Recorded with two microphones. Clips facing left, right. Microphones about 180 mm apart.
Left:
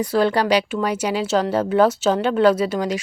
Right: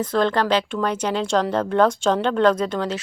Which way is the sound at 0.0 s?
10° left (ahead or behind).